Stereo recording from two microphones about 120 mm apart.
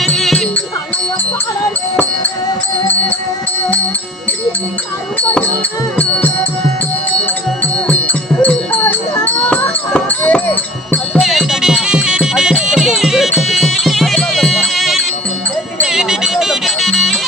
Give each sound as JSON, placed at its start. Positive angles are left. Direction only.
{"t": 0.0, "sound": "music", "side_deg": 0}
{"t": 6.0, "sound": "music", "side_deg": 15}
{"t": 7.6, "sound": "music", "side_deg": 15}
{"t": 11.1, "sound": "music", "side_deg": 0}